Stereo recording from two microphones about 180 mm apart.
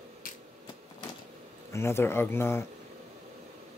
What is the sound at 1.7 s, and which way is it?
Speech, 15° left (ahead or behind).